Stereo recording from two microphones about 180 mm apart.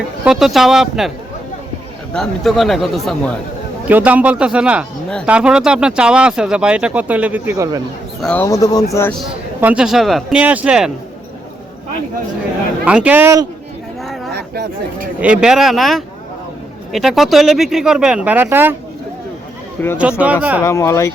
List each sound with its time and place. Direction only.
0.3 s speech: centre (ahead or behind)
2.1 s speech: centre (ahead or behind); by 7.8 s 15° right (ahead or behind)
8.2 s speech: 5° left (ahead or behind)
8.4 s speech: 20° left (ahead or behind)
9.6 s speech: 5° right (ahead or behind)
12.8 s speech: 5° right (ahead or behind)
14.0 s a sound: centre (ahead or behind)
14.3 s speech: 60° right (ahead or behind)
15.2 s speech: 5° right (ahead or behind)
20.0 s speech: 5° right (ahead or behind)
20.7 s speech: 15° left (ahead or behind)